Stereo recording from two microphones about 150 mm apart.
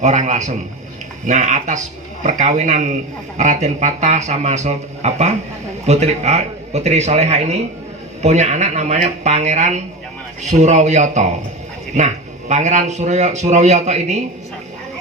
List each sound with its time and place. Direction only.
0.0 s a man's voice: 50° right (ahead or behind)